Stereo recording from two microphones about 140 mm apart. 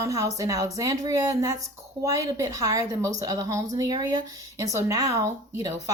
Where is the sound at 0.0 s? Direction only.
25° right (ahead or behind).